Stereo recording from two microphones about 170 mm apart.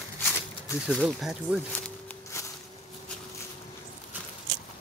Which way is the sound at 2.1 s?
15° left (ahead or behind).